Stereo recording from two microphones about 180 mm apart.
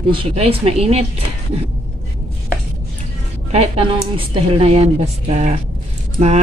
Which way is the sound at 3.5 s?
35° right (ahead or behind).